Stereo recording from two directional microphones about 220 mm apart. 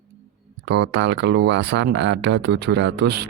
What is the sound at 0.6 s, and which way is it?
Speech, 50° right (ahead or behind).